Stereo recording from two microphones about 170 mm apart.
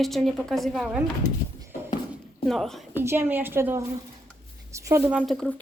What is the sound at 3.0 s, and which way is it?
A woman's voice, 15° right (ahead or behind).